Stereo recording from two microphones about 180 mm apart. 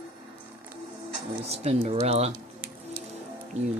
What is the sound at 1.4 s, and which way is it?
Speech, 35° right (ahead or behind).